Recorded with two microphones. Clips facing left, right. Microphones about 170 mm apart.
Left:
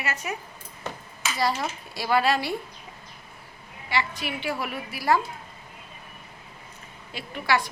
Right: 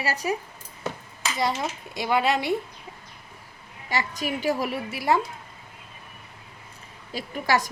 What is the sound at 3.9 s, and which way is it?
A woman's voice, 40° right (ahead or behind).